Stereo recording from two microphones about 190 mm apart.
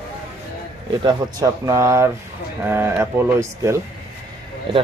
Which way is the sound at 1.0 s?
20° right (ahead or behind).